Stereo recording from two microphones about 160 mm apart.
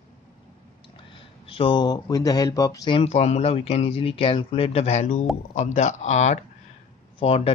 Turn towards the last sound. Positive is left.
turn(degrees=40)  # may be behind; listen again after turning